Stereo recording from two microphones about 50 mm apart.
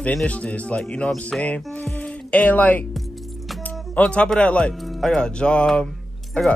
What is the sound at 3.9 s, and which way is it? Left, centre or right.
Speech, left.